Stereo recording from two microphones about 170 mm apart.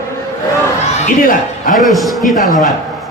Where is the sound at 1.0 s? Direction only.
55° left (ahead or behind).